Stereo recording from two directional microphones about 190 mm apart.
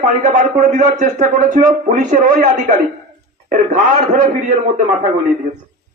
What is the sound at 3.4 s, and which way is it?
Speech, 40° right (ahead or behind).